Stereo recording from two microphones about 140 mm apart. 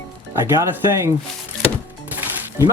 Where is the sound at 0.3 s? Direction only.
15° right (ahead or behind).